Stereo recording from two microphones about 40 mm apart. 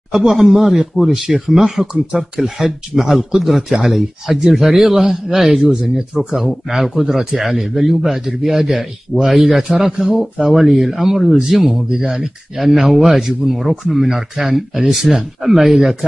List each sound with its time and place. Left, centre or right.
0.1 s speech: centre
5.6 s speech: centre
11.9 s speech: centre